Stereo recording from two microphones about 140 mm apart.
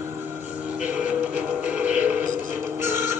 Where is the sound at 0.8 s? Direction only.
10° right (ahead or behind).